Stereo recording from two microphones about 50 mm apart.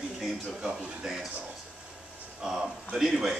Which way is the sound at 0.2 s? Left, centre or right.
Centre.